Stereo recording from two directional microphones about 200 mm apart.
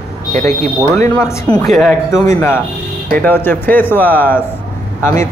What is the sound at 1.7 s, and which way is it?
Speech, centre (ahead or behind).